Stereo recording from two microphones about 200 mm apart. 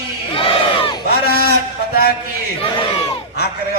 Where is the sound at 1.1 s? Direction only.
50° left (ahead or behind).